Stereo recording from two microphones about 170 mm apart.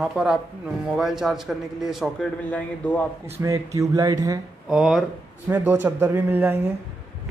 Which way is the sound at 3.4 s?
20° right (ahead or behind).